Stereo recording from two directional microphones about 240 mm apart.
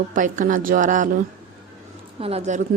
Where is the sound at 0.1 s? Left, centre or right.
Right.